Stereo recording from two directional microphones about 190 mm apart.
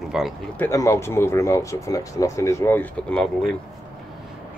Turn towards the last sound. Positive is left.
turn(degrees=5)  # may be behind; listen again after turning